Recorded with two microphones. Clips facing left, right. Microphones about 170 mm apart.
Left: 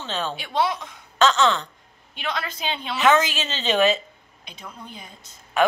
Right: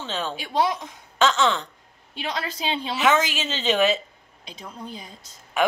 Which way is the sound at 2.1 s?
35° right (ahead or behind).